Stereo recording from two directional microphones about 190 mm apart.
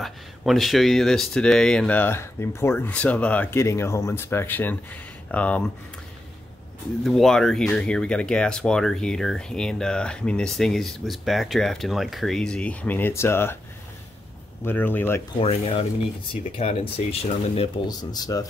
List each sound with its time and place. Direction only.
0.0 s speech: centre (ahead or behind)
7.0 s speech: centre (ahead or behind)
14.6 s speech: 10° left (ahead or behind)
15.4 s speech: 35° left (ahead or behind)